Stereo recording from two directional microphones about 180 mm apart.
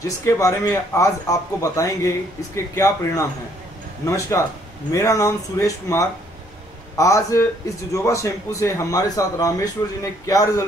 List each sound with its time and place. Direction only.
0.0 s speech: 15° left (ahead or behind)